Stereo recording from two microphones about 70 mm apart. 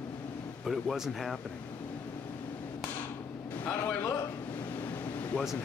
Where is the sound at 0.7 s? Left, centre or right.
Centre.